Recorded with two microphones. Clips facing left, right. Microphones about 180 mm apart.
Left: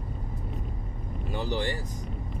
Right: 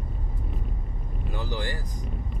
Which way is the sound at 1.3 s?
25° left (ahead or behind).